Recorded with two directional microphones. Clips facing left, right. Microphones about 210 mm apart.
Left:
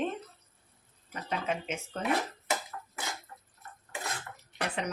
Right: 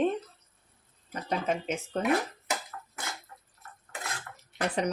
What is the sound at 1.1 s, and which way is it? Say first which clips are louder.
Speech: right 3 dB; 40° right (ahead or behind).